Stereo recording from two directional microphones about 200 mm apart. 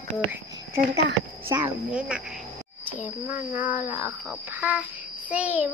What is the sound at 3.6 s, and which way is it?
Speech, 40° left (ahead or behind).